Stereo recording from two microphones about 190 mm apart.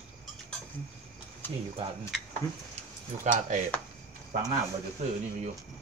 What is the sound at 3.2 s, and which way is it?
Speech, 40° right (ahead or behind).